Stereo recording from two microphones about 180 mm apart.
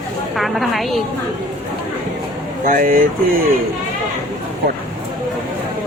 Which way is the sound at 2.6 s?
50° right (ahead or behind).